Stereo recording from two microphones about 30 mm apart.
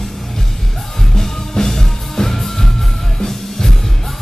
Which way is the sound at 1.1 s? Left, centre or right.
Centre.